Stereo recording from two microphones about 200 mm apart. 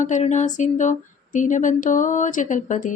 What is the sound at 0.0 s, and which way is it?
Speech, 35° left (ahead or behind).